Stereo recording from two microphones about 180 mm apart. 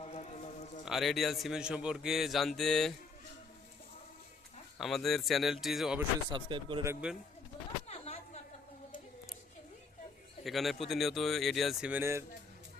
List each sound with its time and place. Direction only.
0.0 s a sound: 35° left (ahead or behind)
0.9 s a man's voice: centre (ahead or behind)
4.8 s a man's voice: centre (ahead or behind)
6.3 s speech: 25° right (ahead or behind)
6.8 s a man's voice: 5° right (ahead or behind)
7.9 s a sound: 35° left (ahead or behind)
10.4 s a man's voice: centre (ahead or behind)